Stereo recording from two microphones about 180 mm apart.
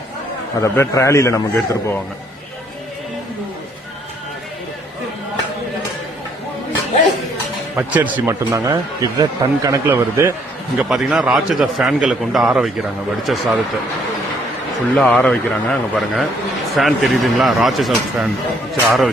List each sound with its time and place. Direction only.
0.6 s a man's voice: 15° left (ahead or behind)
7.8 s a man's voice: 10° right (ahead or behind)
10.8 s a man's voice: 5° right (ahead or behind)
14.9 s a man's voice: 5° left (ahead or behind)